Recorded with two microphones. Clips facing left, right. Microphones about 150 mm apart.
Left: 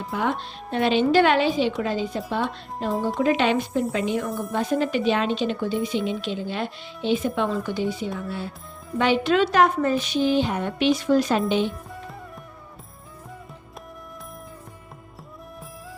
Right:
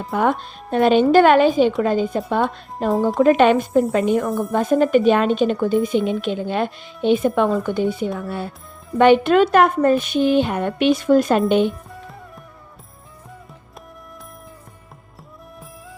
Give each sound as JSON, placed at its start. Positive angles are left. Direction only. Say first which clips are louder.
{"t": 0.1, "sound": "a woman's voice", "louder": "right 7 dB", "side_deg": -50}